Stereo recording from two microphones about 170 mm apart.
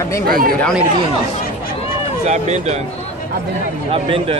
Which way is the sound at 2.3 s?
40° right (ahead or behind).